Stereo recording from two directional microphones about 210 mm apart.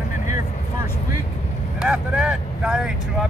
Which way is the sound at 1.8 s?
5° right (ahead or behind).